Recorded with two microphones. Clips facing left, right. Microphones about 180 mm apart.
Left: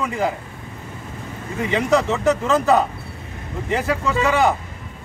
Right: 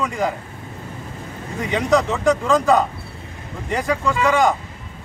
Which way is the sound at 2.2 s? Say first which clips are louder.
Right 1 dB; 15° right (ahead or behind).